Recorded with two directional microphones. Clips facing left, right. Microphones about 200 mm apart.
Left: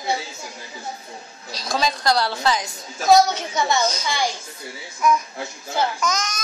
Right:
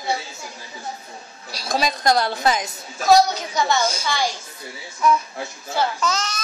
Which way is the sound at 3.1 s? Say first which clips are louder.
Even; 25° left (ahead or behind).